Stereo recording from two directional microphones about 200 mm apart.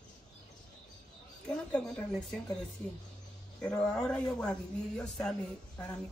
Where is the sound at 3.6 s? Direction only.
10° left (ahead or behind).